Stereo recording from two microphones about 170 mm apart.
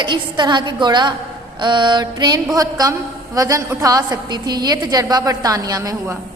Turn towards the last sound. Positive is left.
turn(degrees=-20)  # may be behind; listen again after turning